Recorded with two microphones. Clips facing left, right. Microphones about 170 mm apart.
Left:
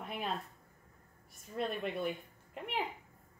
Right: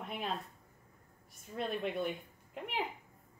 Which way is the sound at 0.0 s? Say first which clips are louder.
Even; centre (ahead or behind).